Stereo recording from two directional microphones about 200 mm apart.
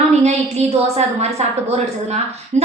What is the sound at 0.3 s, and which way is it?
A woman's voice, 35° right (ahead or behind).